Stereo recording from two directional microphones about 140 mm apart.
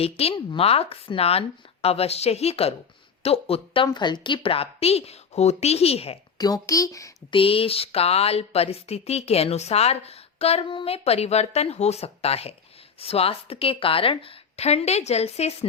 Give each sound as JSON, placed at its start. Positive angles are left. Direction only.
{"t": 0.0, "sound": "speech", "side_deg": 45}
{"t": 3.9, "sound": "speech", "side_deg": 30}
{"t": 6.4, "sound": "speech", "side_deg": 25}
{"t": 7.3, "sound": "speech", "side_deg": 40}